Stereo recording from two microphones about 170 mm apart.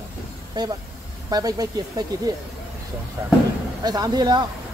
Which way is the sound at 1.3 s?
20° right (ahead or behind).